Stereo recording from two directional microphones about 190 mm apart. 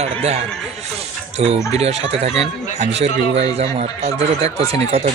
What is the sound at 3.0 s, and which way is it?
Speech, 35° right (ahead or behind).